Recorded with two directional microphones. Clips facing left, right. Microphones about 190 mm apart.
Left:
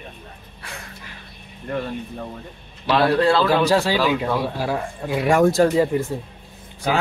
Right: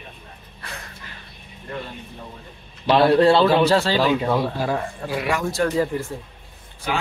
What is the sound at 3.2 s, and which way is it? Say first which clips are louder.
Speech: right 3 dB; 20° right (ahead or behind).